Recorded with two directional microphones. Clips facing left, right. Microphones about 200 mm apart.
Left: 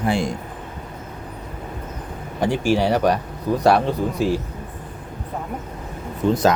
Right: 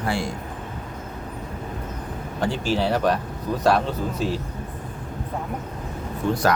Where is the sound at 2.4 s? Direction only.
15° left (ahead or behind).